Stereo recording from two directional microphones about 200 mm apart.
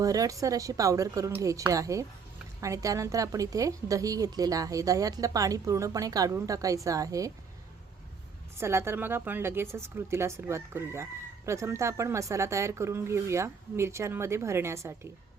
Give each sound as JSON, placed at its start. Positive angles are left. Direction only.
{"t": 0.0, "sound": "a woman's voice", "side_deg": -15}
{"t": 8.5, "sound": "a woman's voice", "side_deg": -15}